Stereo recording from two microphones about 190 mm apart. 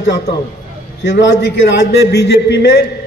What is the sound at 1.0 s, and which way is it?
A man's voice, 60° left (ahead or behind).